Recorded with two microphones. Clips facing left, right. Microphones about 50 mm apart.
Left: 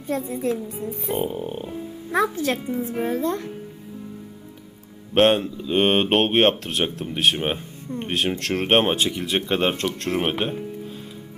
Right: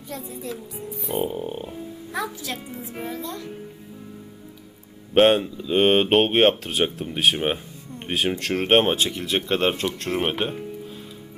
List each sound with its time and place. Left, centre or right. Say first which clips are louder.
0.1 s speech: left 9 dB; left
1.2 s speech: even; centre
2.1 s speech: left 8 dB; left
5.1 s speech: right 1 dB; centre